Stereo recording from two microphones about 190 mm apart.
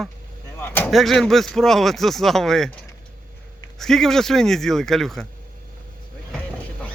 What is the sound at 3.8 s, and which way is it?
Speech, centre (ahead or behind).